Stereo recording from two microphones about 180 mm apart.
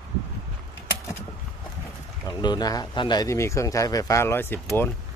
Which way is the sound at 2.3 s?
25° left (ahead or behind).